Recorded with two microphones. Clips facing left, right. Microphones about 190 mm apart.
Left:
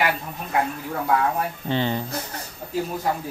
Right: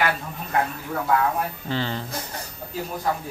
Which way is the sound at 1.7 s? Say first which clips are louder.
Left 6 dB; 20° left (ahead or behind).